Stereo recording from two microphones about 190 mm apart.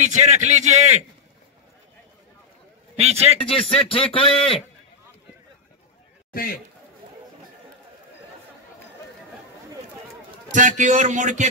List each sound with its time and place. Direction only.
0.0 s a man's voice: 40° right (ahead or behind)
3.0 s a man's voice: 35° right (ahead or behind)
3.3 s speech: 30° left (ahead or behind)
10.5 s a man's voice: 40° right (ahead or behind)